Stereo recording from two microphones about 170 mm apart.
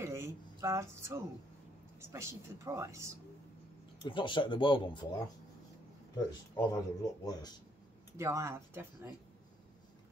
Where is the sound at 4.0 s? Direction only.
30° left (ahead or behind).